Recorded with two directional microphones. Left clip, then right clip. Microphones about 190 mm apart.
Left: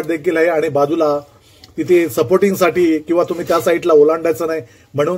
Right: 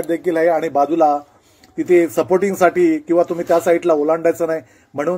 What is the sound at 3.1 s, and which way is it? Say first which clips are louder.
Speech: even; 70° right (ahead or behind).